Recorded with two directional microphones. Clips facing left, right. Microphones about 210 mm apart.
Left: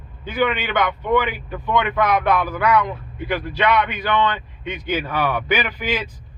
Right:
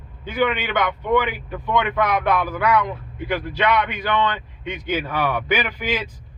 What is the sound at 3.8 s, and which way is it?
A man's voice, 15° right (ahead or behind).